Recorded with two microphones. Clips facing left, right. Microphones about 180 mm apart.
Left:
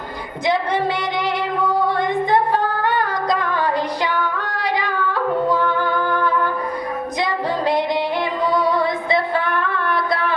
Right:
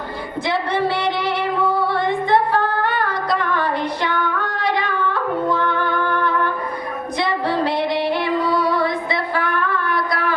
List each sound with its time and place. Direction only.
0.4 s speech: 15° left (ahead or behind)
1.9 s singing: 15° left (ahead or behind)
5.5 s music: 10° left (ahead or behind)
7.2 s female singing: 15° left (ahead or behind)
9.9 s a sound: 25° left (ahead or behind)